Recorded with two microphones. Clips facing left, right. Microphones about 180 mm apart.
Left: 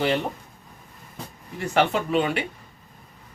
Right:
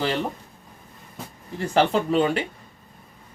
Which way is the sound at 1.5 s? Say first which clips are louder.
Right 2 dB; 35° right (ahead or behind).